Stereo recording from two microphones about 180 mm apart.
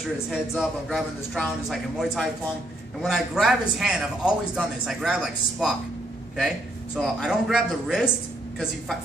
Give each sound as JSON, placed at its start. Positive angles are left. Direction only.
{"t": 0.3, "sound": "a man's voice", "side_deg": 0}
{"t": 7.0, "sound": "a man's voice", "side_deg": 0}